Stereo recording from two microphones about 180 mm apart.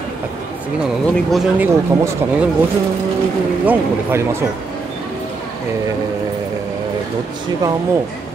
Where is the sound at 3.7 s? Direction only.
15° right (ahead or behind).